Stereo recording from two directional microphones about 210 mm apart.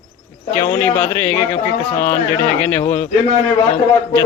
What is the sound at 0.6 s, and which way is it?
Speech, 10° left (ahead or behind).